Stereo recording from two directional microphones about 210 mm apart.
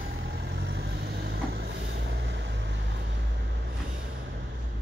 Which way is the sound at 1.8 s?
55° right (ahead or behind).